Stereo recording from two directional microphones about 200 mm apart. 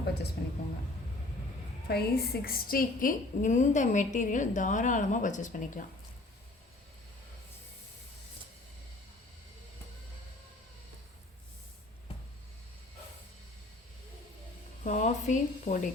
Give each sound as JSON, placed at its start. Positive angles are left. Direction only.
{"t": 0.4, "sound": "speech", "side_deg": 50}
{"t": 1.9, "sound": "a woman's voice", "side_deg": 50}
{"t": 14.8, "sound": "a sound", "side_deg": 35}